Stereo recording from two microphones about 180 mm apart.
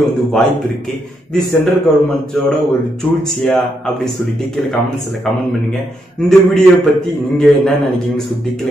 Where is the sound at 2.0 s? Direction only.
Centre (ahead or behind).